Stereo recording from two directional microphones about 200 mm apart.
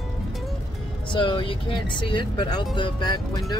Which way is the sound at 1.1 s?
25° left (ahead or behind).